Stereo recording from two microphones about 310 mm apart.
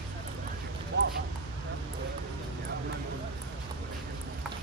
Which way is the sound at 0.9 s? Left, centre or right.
Right.